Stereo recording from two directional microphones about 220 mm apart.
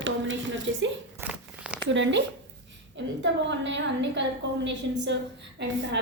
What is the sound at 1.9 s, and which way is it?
A woman's voice, 55° right (ahead or behind).